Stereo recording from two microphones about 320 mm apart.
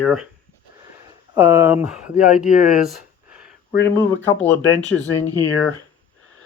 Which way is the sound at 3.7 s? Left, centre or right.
Left.